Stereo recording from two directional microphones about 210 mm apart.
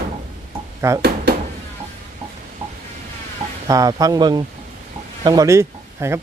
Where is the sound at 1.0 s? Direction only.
50° right (ahead or behind).